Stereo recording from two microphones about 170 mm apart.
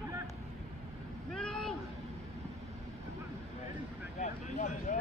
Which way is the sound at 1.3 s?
5° left (ahead or behind).